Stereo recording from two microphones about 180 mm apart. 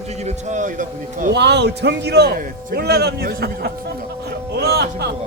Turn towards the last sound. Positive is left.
turn(degrees=-65)  # may be behind; listen again after turning